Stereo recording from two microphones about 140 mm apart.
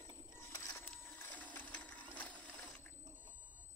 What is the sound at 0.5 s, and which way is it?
Sewing machine, 20° left (ahead or behind).